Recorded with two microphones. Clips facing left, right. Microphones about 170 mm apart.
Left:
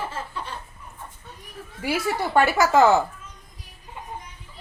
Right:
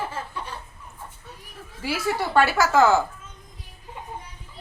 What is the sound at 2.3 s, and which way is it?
Speech, 15° left (ahead or behind).